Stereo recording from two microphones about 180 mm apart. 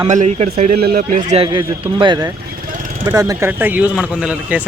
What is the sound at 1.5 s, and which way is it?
A man's voice, 25° right (ahead or behind).